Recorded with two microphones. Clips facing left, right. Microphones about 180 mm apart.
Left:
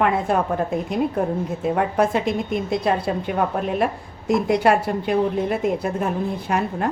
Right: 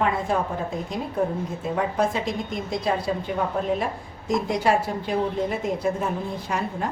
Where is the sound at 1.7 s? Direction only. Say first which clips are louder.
Left 3 dB; 60° left (ahead or behind).